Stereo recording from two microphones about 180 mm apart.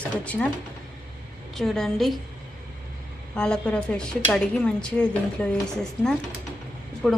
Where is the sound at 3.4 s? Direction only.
5° left (ahead or behind).